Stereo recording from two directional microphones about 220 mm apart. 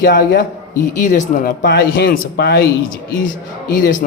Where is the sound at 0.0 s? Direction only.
40° left (ahead or behind).